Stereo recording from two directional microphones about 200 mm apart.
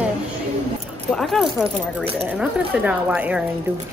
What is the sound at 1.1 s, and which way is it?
Speech, centre (ahead or behind).